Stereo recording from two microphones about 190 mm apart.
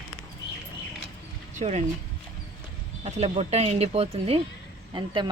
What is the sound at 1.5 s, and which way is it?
Speech, 35° right (ahead or behind).